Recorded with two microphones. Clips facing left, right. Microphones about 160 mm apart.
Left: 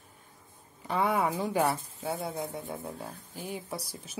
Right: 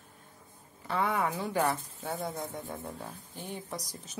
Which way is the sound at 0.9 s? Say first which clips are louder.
Left 2 dB; 15° left (ahead or behind).